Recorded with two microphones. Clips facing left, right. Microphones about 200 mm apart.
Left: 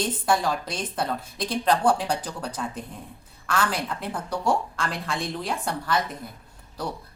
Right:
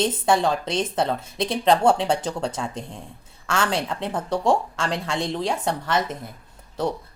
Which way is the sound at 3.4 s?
25° right (ahead or behind).